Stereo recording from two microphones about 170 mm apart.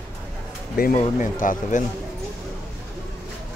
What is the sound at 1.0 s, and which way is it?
Speech, 50° left (ahead or behind).